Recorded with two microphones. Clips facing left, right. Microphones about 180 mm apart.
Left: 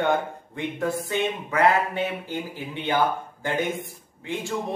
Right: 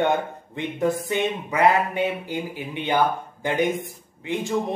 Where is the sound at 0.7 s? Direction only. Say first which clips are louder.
Right 3 dB; 20° right (ahead or behind).